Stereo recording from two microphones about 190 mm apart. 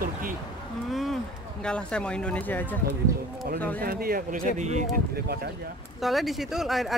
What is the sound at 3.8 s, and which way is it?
Speech, 50° right (ahead or behind).